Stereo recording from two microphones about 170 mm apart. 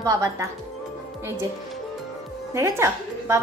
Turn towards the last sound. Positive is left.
turn(degrees=-15)  # may be behind; listen again after turning